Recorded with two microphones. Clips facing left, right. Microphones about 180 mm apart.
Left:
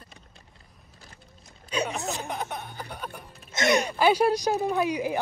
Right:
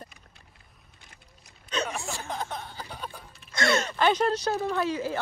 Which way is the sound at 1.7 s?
15° left (ahead or behind).